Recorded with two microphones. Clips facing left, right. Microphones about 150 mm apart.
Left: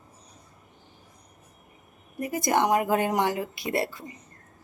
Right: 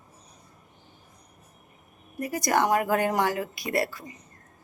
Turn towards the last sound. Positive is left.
turn(degrees=25)  # may be behind; listen again after turning